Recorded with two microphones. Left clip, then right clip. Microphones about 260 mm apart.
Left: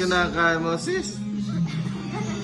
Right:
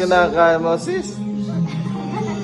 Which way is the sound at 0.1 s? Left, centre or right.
Right.